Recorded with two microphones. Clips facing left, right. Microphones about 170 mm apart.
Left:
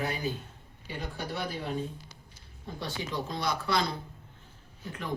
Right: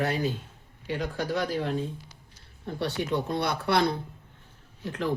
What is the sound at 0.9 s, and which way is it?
Speech, 90° right.